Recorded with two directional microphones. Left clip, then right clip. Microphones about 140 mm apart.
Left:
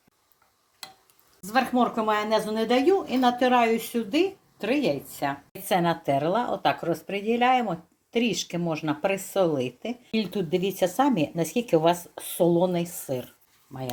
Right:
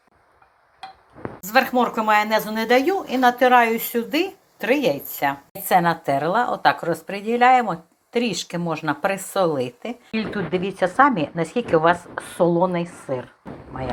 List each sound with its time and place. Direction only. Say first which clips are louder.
1.4 s speech: right 5 dB; 5° right (ahead or behind)
9.6 s speech: right 2 dB; 50° right (ahead or behind)
10.1 s a woman's voice: right 2 dB; 15° right (ahead or behind)
10.8 s a woman's voice: right 7 dB; 25° left (ahead or behind)
11.0 s a woman's voice: right 6 dB; 20° right (ahead or behind)
11.9 s a woman's voice: right 5 dB; 25° left (ahead or behind)
12.4 s a woman's voice: right 3 dB; 15° right (ahead or behind)